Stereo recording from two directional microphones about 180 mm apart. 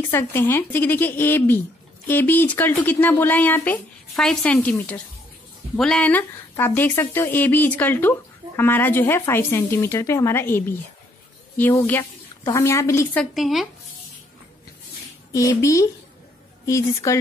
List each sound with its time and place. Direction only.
0.1 s a woman's voice: 10° left (ahead or behind)
13.2 s speech: centre (ahead or behind)
15.3 s speech: 15° left (ahead or behind)